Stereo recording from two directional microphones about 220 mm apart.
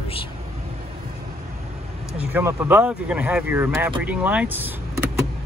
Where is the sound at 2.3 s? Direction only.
10° right (ahead or behind).